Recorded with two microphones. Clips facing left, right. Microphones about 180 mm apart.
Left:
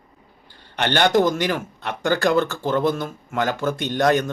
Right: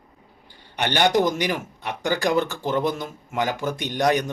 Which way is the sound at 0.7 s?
15° right (ahead or behind).